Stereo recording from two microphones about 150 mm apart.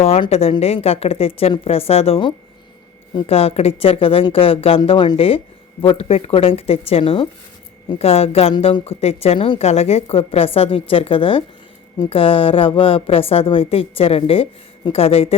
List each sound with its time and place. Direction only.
0.0 s a woman's voice: 45° left (ahead or behind)